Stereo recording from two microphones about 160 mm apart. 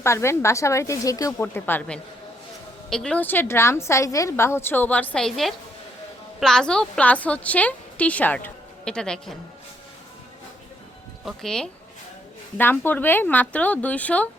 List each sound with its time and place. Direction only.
0.0 s a woman's voice: 15° left (ahead or behind)
11.3 s a woman's voice: 5° left (ahead or behind)